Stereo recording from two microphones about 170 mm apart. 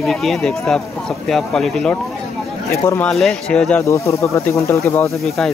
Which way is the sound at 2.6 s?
15° left (ahead or behind).